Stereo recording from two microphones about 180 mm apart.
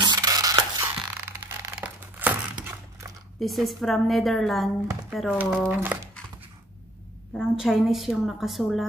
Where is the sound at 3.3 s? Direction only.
Centre (ahead or behind).